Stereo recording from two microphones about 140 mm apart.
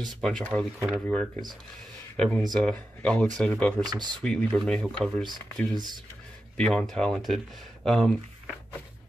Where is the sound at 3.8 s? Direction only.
30° right (ahead or behind).